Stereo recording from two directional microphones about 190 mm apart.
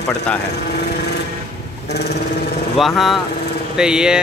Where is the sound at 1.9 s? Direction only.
60° left (ahead or behind).